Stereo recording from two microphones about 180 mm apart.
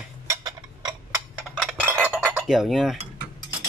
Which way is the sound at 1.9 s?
10° right (ahead or behind).